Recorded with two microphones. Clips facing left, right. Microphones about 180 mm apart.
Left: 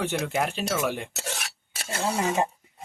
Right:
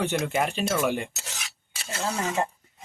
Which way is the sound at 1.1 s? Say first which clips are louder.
Left 7 dB; 55° left (ahead or behind).